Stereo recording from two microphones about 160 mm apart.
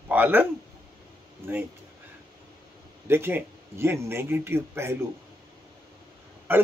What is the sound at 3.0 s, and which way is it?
Speech, 15° right (ahead or behind).